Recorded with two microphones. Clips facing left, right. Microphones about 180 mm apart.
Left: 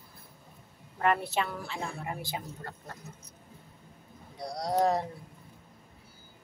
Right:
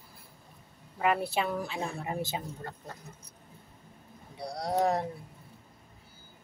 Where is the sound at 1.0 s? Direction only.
10° right (ahead or behind).